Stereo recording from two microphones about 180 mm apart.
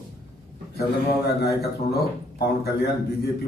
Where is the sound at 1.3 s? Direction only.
60° left (ahead or behind).